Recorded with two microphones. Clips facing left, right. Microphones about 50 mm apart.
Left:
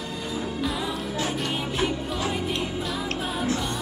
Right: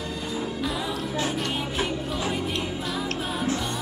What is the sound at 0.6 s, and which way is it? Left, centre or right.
Music, centre.